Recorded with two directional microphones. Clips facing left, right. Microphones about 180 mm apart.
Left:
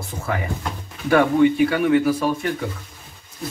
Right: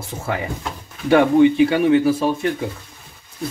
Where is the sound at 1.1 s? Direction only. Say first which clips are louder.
Right 3 dB; 25° right (ahead or behind).